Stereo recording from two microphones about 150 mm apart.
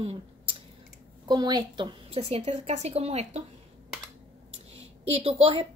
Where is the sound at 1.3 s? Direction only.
30° right (ahead or behind).